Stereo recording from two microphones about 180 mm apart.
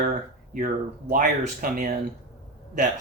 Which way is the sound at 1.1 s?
50° right (ahead or behind).